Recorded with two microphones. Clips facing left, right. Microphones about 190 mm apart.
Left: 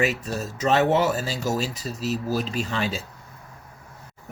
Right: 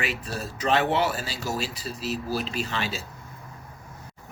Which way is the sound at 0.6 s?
40° left (ahead or behind).